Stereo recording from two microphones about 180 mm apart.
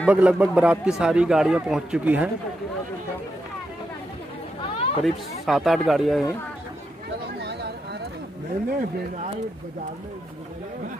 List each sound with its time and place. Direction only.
0.0 s a man's voice: 5° right (ahead or behind)
4.6 s chatter: 30° left (ahead or behind)
5.0 s a man's voice: centre (ahead or behind)